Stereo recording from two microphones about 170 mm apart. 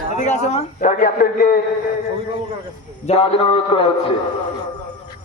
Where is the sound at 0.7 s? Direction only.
55° left (ahead or behind).